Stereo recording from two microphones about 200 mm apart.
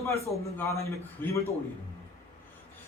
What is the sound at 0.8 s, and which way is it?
Speech, 15° left (ahead or behind).